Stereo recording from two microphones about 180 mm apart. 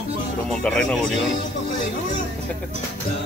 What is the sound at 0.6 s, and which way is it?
Speech, 5° left (ahead or behind).